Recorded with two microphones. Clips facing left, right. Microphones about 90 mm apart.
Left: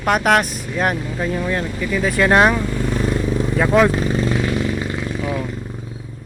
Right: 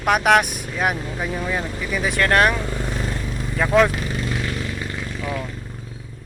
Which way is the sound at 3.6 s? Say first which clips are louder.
Left 2 dB; 5° left (ahead or behind).